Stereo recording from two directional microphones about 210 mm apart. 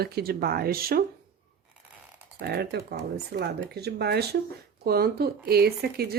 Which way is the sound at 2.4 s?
50° right (ahead or behind).